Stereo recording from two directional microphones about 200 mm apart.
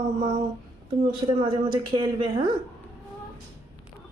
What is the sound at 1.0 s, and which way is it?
Speech, 25° right (ahead or behind).